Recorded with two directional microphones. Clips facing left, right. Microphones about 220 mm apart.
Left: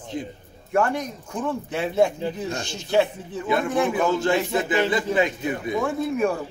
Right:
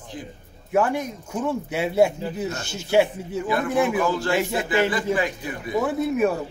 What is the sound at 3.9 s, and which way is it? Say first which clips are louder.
Speech: left 1 dB; 20° left (ahead or behind).